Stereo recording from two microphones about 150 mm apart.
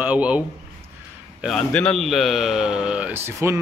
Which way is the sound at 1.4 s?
5° left (ahead or behind).